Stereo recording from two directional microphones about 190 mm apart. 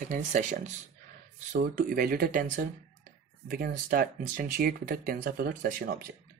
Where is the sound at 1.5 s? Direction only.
50° right (ahead or behind).